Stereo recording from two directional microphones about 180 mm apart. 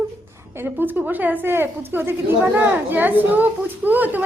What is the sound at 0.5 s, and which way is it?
A woman's voice, 10° right (ahead or behind).